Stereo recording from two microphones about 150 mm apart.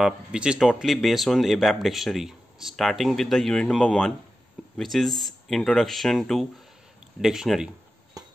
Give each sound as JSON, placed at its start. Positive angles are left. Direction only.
{"t": 0.0, "sound": "speech", "side_deg": -5}